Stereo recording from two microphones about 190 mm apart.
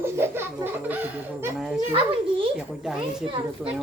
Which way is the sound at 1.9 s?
30° right (ahead or behind).